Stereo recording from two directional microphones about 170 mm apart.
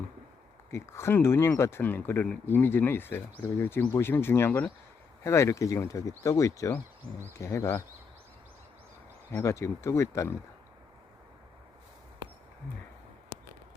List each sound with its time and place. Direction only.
0.7 s speech: 15° left (ahead or behind)
9.3 s speech: 15° left (ahead or behind)